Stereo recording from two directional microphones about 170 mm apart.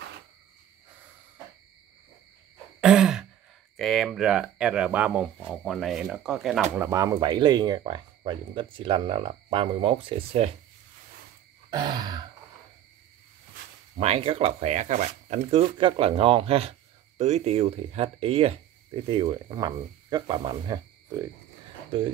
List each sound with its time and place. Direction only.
2.8 s throat clearing: 5° right (ahead or behind)
3.7 s speech: centre (ahead or behind)
6.8 s speech: 15° right (ahead or behind); by 10.5 s 35° right (ahead or behind)
11.7 s speech: 25° right (ahead or behind)
13.9 s speech: 35° right (ahead or behind)